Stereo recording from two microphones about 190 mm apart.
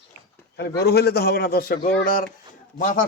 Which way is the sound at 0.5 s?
60° left (ahead or behind).